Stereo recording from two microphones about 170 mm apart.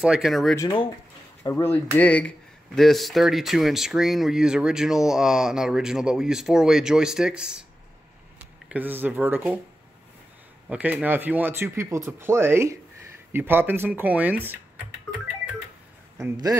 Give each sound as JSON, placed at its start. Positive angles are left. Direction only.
{"t": 0.0, "sound": "speech", "side_deg": -5}
{"t": 1.4, "sound": "speech", "side_deg": 15}
{"t": 8.6, "sound": "speech", "side_deg": -10}
{"t": 10.7, "sound": "speech", "side_deg": -10}
{"t": 16.2, "sound": "speech", "side_deg": -20}